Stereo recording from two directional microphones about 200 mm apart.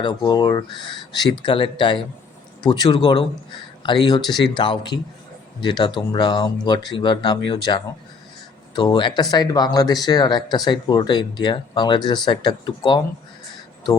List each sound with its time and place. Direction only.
0.0 s speech: 20° left (ahead or behind)